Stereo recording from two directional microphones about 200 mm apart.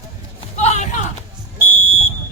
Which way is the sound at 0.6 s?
35° left (ahead or behind).